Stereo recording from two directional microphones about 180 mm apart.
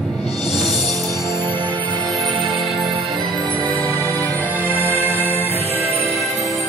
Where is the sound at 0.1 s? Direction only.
Centre (ahead or behind).